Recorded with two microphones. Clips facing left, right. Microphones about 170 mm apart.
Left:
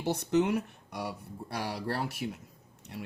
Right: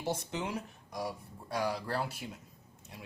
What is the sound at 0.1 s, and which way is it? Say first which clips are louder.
Speech: left 9 dB; 65° left (ahead or behind).